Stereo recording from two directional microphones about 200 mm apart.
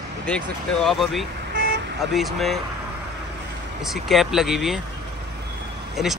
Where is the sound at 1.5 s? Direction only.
60° right (ahead or behind).